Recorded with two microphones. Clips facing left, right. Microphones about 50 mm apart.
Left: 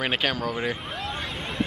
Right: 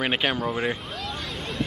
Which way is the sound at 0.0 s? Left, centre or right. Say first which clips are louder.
Right 1 dB; centre.